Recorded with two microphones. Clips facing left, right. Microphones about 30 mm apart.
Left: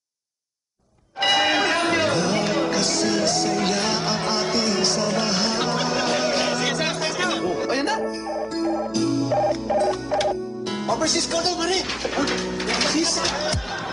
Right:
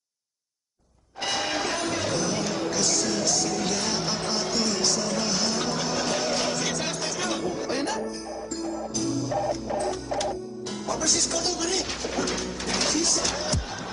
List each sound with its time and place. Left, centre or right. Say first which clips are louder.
1.2 s music: left 8 dB; left
10.9 s speech: left 4 dB; left